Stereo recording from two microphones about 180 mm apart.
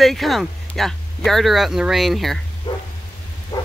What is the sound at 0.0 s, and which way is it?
Speech, centre (ahead or behind).